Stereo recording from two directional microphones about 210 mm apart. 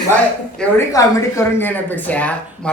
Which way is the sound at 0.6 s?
10° left (ahead or behind).